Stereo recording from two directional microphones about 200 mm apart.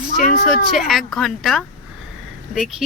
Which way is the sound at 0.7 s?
Centre (ahead or behind).